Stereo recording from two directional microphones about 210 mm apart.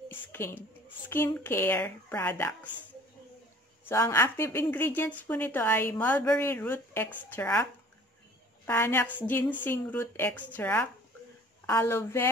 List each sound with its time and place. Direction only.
0.1 s a sound: 10° left (ahead or behind)
1.0 s speech: 10° left (ahead or behind)
3.9 s speech: 10° left (ahead or behind)
8.6 s speech: 10° left (ahead or behind)